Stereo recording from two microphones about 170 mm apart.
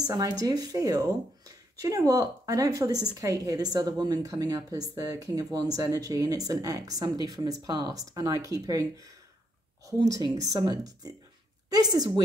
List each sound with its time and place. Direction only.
0.0 s a woman's voice: 20° right (ahead or behind)